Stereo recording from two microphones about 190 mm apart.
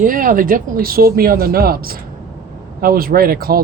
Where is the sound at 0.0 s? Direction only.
45° right (ahead or behind).